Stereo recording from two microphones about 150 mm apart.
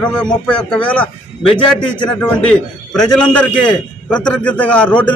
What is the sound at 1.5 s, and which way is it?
Speech, 30° left (ahead or behind).